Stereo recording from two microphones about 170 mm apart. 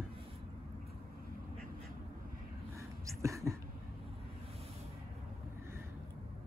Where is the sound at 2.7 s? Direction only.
15° right (ahead or behind).